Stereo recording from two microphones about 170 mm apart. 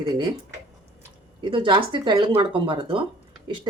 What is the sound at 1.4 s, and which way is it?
Speech, 30° right (ahead or behind).